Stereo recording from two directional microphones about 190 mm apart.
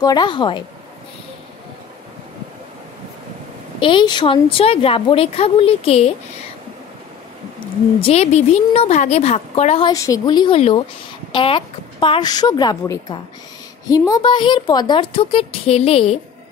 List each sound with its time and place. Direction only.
0.0 s a woman's voice: 20° left (ahead or behind)
3.8 s a woman's voice: 25° left (ahead or behind)
8.0 s a woman's voice: 35° left (ahead or behind)
9.8 s a woman's voice: 15° left (ahead or behind)